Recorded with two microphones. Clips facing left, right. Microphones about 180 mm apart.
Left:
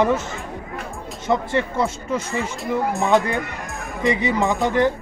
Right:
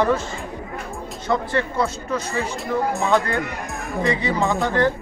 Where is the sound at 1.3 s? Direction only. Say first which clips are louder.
Left 1 dB; 25° left (ahead or behind).